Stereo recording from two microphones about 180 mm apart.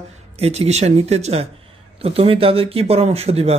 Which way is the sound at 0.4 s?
35° right (ahead or behind).